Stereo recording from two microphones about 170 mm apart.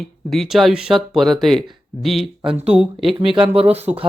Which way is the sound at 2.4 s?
35° right (ahead or behind).